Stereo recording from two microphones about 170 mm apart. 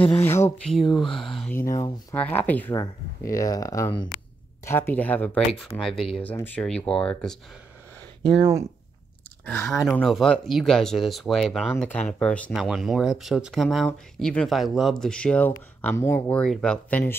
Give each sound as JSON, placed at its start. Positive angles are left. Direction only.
{"t": 0.0, "sound": "speech", "side_deg": 15}
{"t": 0.7, "sound": "speech", "side_deg": 0}
{"t": 2.7, "sound": "speech", "side_deg": 20}
{"t": 9.7, "sound": "speech", "side_deg": 0}